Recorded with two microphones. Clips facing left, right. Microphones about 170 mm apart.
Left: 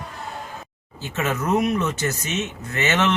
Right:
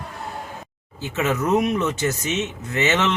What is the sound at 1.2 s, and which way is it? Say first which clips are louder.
Speech: right 2 dB; 20° right (ahead or behind).